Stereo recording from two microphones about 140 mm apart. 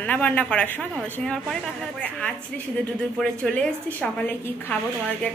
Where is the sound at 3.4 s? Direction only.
5° left (ahead or behind).